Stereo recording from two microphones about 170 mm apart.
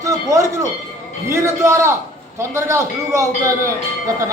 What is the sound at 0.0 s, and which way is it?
A man's voice, 20° right (ahead or behind).